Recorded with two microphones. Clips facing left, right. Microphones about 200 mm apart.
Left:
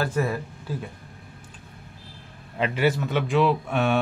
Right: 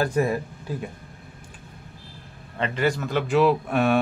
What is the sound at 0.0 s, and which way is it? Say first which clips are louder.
Speech: right 3 dB; 15° right (ahead or behind).